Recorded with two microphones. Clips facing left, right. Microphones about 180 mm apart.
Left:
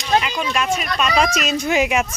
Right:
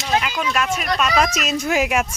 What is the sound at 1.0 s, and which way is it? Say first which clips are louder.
Speech: left 1 dB; 5° right (ahead or behind).